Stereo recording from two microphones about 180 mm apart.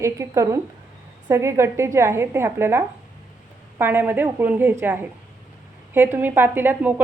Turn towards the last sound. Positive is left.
turn(degrees=-10)  # may be behind; listen again after turning